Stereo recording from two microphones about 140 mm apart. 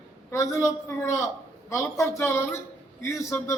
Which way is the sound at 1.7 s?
20° left (ahead or behind).